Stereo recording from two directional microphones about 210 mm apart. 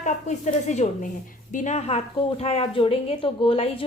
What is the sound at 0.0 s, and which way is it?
A woman's voice, 35° left (ahead or behind).